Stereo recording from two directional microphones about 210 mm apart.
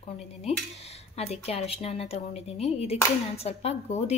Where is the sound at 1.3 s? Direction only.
30° left (ahead or behind).